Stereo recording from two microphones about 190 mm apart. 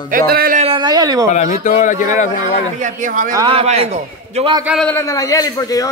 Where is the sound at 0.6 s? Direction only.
25° right (ahead or behind).